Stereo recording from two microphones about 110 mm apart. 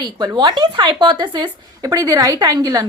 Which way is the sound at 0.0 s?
40° right (ahead or behind).